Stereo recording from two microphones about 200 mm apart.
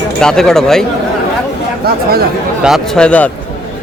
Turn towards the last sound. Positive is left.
turn(degrees=5)  # may be behind; listen again after turning